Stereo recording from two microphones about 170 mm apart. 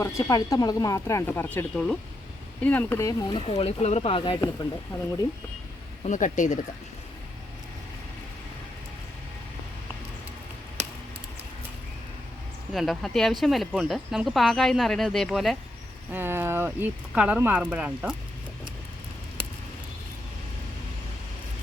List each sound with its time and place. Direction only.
0.0 s speech: 20° left (ahead or behind)
6.0 s speech: 45° left (ahead or behind)
12.7 s speech: centre (ahead or behind)
16.1 s speech: 15° right (ahead or behind)